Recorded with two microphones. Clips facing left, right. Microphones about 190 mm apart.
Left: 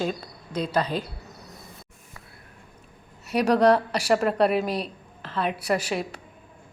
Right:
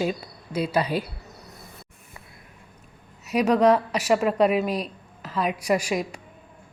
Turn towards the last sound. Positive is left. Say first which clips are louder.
# right 2 dB
turn(degrees=-10)  # may be behind; listen again after turning